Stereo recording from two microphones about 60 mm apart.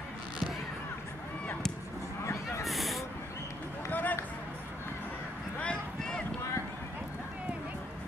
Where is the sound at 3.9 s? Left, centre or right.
Left.